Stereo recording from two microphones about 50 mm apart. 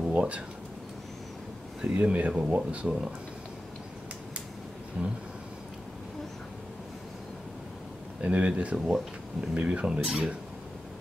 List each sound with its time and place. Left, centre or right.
0.1 s speech: right
1.8 s speech: right
5.0 s speech: right
8.2 s speech: right
8.7 s speech: centre
9.5 s speech: right
9.9 s speech: centre